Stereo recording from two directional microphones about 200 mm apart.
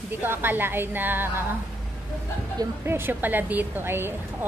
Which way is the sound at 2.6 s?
10° right (ahead or behind).